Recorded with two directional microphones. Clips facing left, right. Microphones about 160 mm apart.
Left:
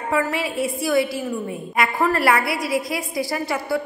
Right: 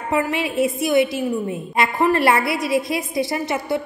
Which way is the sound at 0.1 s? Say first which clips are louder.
Right 2 dB; 20° right (ahead or behind).